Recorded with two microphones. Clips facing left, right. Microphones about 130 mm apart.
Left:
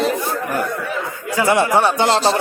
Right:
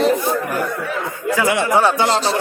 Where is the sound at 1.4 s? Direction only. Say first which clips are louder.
Left 3 dB; 40° left (ahead or behind).